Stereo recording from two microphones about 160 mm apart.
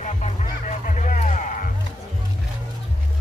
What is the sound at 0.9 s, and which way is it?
Music, 50° left (ahead or behind).